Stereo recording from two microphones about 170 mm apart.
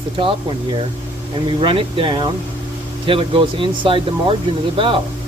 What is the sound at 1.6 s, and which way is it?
Speech, 30° right (ahead or behind).